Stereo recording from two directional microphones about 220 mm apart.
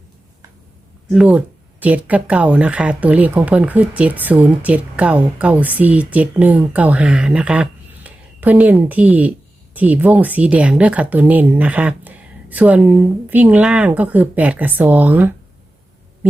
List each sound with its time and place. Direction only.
1.1 s speech: 5° right (ahead or behind)